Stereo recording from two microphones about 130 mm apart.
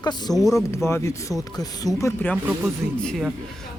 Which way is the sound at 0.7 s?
20° left (ahead or behind).